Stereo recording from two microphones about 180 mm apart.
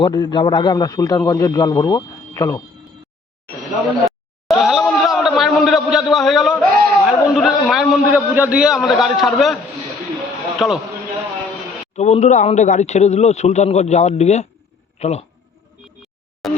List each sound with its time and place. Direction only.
0.0 s a man's voice: 25° left (ahead or behind)
4.0 s a man's voice: centre (ahead or behind)
10.6 s a man's voice: centre (ahead or behind)
11.9 s a man's voice: 40° left (ahead or behind)
16.4 s a sound: centre (ahead or behind)